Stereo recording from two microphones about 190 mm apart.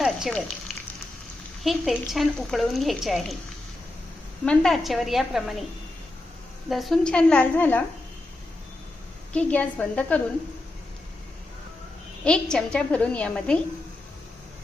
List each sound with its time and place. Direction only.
0.0 s a sound: centre (ahead or behind)
1.6 s speech: centre (ahead or behind)
4.4 s speech: centre (ahead or behind)
6.7 s speech: centre (ahead or behind)
9.3 s a woman's voice: 5° left (ahead or behind)
12.2 s speech: 5° left (ahead or behind)